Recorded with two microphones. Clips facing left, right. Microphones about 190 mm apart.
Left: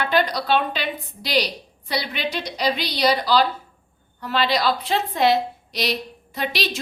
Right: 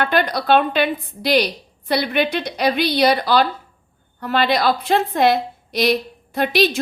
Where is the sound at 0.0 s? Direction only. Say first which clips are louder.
Right 2 dB; 55° right (ahead or behind).